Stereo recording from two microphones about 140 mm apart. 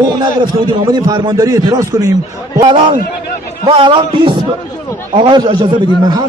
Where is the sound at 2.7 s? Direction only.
35° right (ahead or behind).